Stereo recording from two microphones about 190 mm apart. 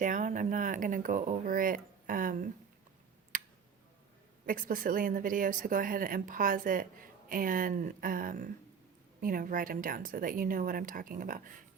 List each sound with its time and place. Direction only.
0.0 s speech: 40° right (ahead or behind)
4.4 s speech: 45° right (ahead or behind)